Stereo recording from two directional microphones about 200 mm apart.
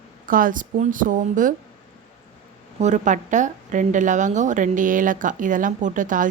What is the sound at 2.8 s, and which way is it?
A woman's voice, 35° right (ahead or behind).